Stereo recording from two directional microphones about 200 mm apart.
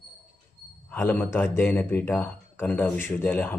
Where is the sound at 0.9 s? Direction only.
10° left (ahead or behind).